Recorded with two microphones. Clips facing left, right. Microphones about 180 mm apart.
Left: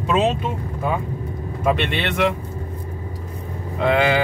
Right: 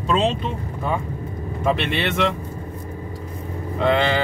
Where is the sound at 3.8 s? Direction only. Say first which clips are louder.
Left 1 dB; 5° left (ahead or behind).